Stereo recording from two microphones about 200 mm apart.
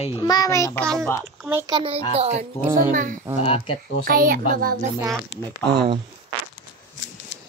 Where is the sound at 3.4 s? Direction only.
30° left (ahead or behind).